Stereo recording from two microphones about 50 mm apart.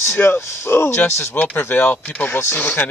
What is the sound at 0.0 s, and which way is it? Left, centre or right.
Speech, left.